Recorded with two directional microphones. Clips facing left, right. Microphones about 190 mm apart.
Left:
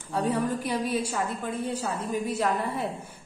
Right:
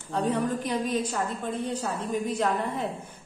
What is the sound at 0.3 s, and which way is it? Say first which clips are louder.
Speech: even; 10° left (ahead or behind).